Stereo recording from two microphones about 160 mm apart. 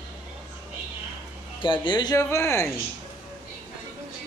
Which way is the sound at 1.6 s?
30° left (ahead or behind).